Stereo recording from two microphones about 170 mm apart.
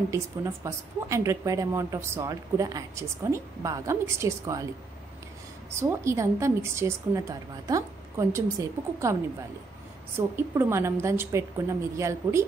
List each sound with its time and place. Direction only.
0.1 s a woman's voice: 15° right (ahead or behind)
5.8 s a woman's voice: 15° right (ahead or behind)
10.1 s a woman's voice: 15° right (ahead or behind)